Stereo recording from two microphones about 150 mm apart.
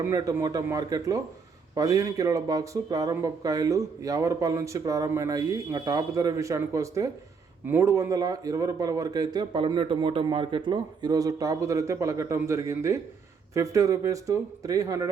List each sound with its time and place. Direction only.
0.0 s speech: 20° right (ahead or behind)